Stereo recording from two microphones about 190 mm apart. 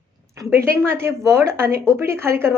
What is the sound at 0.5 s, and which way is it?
A woman's voice, 15° right (ahead or behind).